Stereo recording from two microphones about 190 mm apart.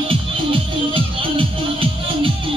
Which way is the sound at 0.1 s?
30° right (ahead or behind).